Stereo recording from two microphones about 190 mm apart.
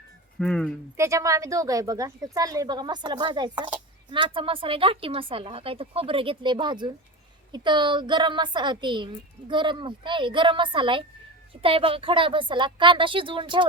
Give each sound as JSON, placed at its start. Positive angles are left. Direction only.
{"t": 0.3, "sound": "speech", "side_deg": 5}
{"t": 0.9, "sound": "a woman's voice", "side_deg": -15}